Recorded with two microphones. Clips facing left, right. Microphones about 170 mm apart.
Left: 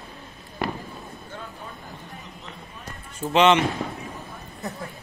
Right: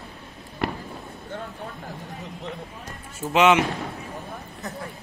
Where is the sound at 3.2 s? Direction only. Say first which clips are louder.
Even; 5° right (ahead or behind).